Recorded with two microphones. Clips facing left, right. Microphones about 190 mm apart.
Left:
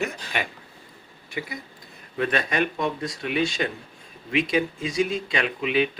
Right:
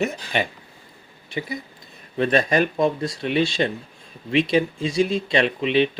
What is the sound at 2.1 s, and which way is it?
Speech, 30° right (ahead or behind).